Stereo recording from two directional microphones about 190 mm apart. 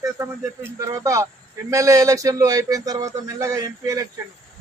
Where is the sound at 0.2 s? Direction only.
15° right (ahead or behind).